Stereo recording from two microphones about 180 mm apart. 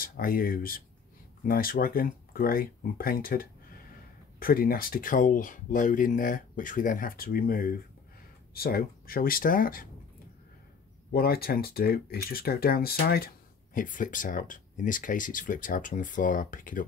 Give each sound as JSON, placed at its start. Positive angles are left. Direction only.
{"t": 0.0, "sound": "speech", "side_deg": 55}
{"t": 11.1, "sound": "speech", "side_deg": 55}